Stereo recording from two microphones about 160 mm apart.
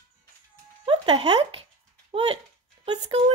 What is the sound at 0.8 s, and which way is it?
Speech, 35° right (ahead or behind).